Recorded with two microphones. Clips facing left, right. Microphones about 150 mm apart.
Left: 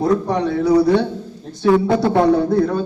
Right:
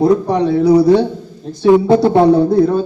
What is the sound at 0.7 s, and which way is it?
A man's voice, 20° right (ahead or behind).